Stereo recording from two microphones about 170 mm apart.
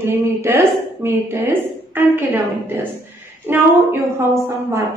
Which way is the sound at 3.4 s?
15° right (ahead or behind).